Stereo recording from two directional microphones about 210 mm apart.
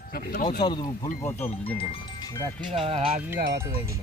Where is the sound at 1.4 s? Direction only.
5° left (ahead or behind).